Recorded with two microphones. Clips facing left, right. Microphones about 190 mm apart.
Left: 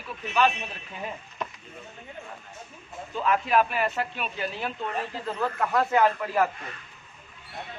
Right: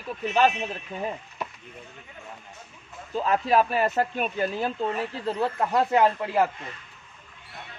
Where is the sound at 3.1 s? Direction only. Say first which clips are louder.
Right 2 dB; 35° right (ahead or behind).